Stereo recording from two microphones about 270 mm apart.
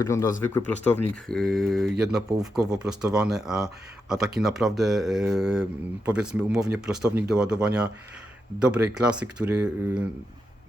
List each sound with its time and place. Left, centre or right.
0.0 s speech: centre
2.6 s speech: centre
2.8 s speech: centre